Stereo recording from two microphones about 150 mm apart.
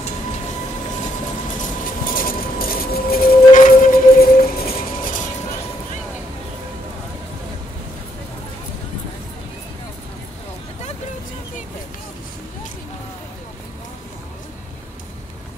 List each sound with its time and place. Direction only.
2.0 s a sound: 70° left (ahead or behind); by 3.6 s 90° left
3.6 s music: 65° left (ahead or behind); by 4.7 s 90° left
5.0 s music: 60° left (ahead or behind)